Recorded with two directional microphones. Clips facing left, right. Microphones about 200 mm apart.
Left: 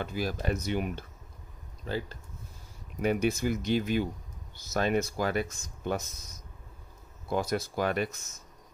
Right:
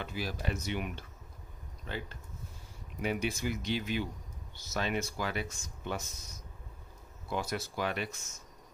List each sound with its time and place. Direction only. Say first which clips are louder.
0.0 s speech: left 5 dB; 45° left (ahead or behind)
3.0 s speech: left 6 dB; 45° left (ahead or behind)
7.2 s speech: left 6 dB; 40° left (ahead or behind)